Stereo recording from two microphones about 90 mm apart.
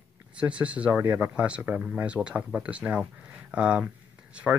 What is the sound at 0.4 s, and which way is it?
Speech, 15° right (ahead or behind).